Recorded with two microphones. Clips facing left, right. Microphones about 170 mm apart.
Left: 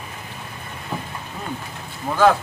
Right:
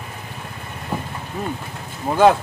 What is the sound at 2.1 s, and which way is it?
Speech, 30° right (ahead or behind).